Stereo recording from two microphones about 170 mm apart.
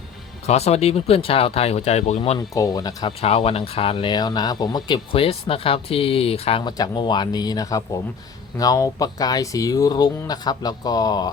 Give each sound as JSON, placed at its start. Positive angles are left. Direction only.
{"t": 0.4, "sound": "speech", "side_deg": 40}
{"t": 2.6, "sound": "speech", "side_deg": 20}
{"t": 3.2, "sound": "speech", "side_deg": 35}
{"t": 6.7, "sound": "speech", "side_deg": 25}